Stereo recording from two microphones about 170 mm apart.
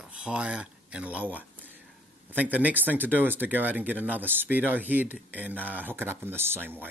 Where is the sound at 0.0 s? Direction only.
5° right (ahead or behind).